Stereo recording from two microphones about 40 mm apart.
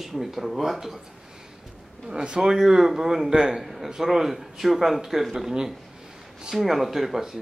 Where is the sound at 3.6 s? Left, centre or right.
Centre.